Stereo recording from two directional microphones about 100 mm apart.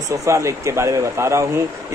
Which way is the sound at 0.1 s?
30° right (ahead or behind).